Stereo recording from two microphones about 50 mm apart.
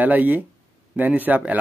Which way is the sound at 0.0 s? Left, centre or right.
Right.